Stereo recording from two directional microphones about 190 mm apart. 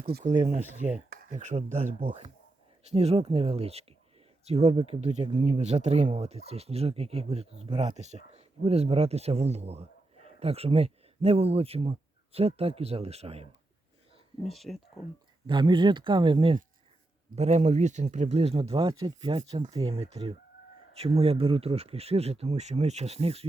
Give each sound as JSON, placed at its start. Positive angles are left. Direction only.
{"t": 0.1, "sound": "speech", "side_deg": -45}
{"t": 14.4, "sound": "speech", "side_deg": 0}
{"t": 15.4, "sound": "speech", "side_deg": -25}